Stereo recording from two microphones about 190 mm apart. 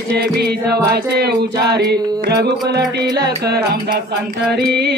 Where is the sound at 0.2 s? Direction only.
60° right (ahead or behind).